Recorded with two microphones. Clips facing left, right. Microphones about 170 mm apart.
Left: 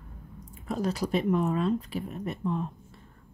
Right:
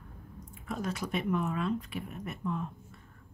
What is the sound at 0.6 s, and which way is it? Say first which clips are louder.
Speech: left 6 dB; 35° left (ahead or behind).